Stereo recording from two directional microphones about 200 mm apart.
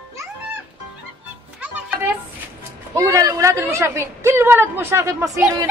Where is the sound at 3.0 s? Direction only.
15° right (ahead or behind).